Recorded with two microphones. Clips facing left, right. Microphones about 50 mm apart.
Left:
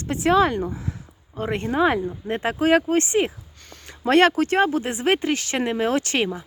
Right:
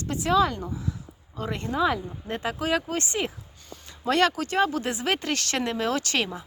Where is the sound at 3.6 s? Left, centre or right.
Left.